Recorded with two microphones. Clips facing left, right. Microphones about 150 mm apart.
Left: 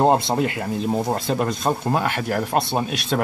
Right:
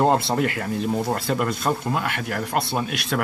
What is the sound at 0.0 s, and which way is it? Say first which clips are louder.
Speech: left 2 dB; 20° left (ahead or behind).